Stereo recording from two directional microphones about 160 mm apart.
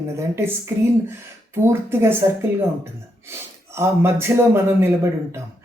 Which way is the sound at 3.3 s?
15° right (ahead or behind).